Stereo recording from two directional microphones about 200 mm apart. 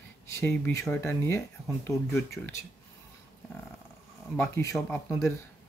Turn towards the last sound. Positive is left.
turn(degrees=15)  # may be behind; listen again after turning